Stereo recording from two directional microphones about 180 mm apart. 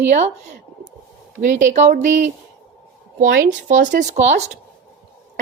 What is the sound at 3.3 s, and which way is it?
Speech, 80° right.